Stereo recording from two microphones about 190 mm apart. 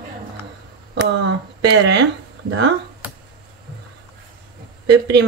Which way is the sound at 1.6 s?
65° right (ahead or behind).